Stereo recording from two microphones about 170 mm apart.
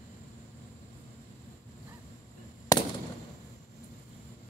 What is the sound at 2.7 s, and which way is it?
Fireworks, 20° left (ahead or behind).